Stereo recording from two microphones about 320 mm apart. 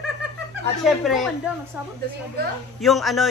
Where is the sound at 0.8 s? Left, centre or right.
Centre.